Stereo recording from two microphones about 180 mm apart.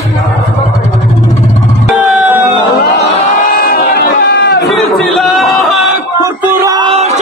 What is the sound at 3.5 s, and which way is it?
Crowd, 55° left (ahead or behind).